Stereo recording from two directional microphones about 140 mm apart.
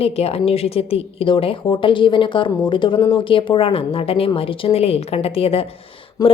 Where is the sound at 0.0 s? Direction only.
45° left (ahead or behind).